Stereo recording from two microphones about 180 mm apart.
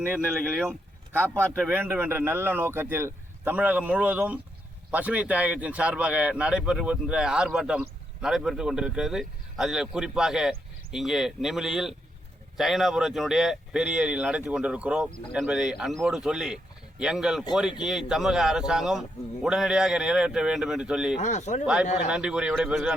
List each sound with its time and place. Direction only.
0.0 s a man's voice: 10° left (ahead or behind)
0.7 s a man's voice: 10° right (ahead or behind)
21.2 s speech: 40° left (ahead or behind)
22.1 s a man's voice: 5° right (ahead or behind)